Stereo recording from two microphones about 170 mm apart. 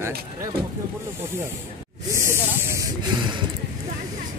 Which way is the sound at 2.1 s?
15° right (ahead or behind).